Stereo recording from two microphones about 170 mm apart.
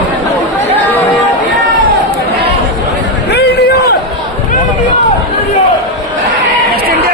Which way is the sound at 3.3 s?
70° left (ahead or behind).